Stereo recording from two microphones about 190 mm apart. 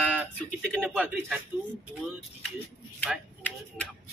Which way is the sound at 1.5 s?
5° right (ahead or behind).